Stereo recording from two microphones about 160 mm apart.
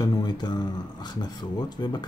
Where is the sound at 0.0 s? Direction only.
25° left (ahead or behind).